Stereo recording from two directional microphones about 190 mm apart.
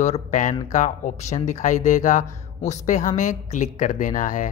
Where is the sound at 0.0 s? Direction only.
40° left (ahead or behind).